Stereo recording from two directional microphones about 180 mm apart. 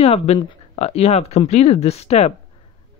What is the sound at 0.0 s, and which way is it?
Speech, 35° left (ahead or behind).